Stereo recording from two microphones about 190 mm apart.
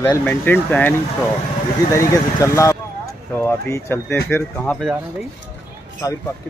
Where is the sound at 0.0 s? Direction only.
10° left (ahead or behind).